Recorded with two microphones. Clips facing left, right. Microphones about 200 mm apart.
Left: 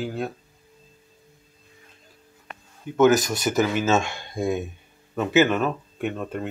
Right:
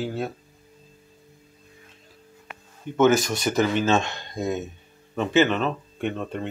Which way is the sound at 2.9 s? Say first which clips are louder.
Left 1 dB; 5° left (ahead or behind).